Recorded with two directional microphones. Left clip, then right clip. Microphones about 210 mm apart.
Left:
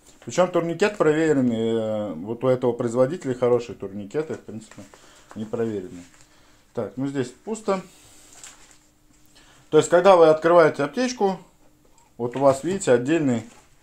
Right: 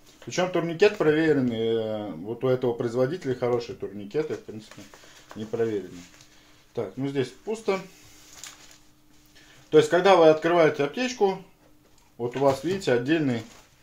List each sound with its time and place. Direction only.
0.3 s speech: 30° left (ahead or behind)
6.7 s speech: 30° left (ahead or behind)
9.7 s speech: 30° left (ahead or behind)